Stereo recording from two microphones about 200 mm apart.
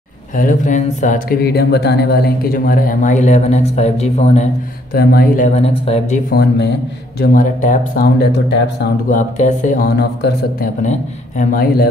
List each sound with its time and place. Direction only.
0.3 s speech: 40° left (ahead or behind)
4.9 s speech: 50° left (ahead or behind); by 6.2 s 35° left (ahead or behind)
6.3 s speech: 50° left (ahead or behind)
7.2 s speech: 40° left (ahead or behind); by 8.8 s 60° left (ahead or behind)
9.1 s speech: 40° left (ahead or behind)
10.8 s speech: 35° left (ahead or behind)